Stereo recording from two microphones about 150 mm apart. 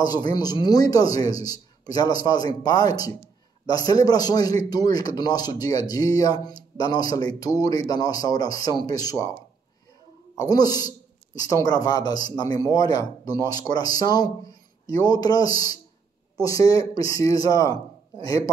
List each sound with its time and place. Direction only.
0.0 s a man's voice: 25° left (ahead or behind)
10.5 s a man's voice: 25° left (ahead or behind)